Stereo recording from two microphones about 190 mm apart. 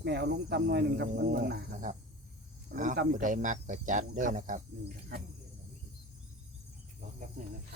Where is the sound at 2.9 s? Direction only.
55° right (ahead or behind).